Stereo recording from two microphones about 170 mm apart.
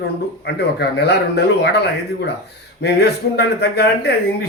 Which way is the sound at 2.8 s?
80° left.